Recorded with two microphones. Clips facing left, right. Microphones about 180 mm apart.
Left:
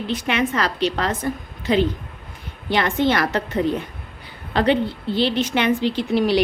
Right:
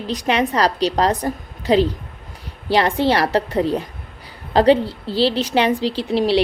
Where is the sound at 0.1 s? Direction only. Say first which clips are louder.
Right 3 dB; 35° right (ahead or behind).